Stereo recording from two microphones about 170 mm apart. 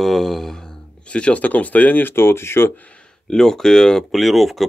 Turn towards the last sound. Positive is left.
turn(degrees=0)  # may be behind; listen again after turning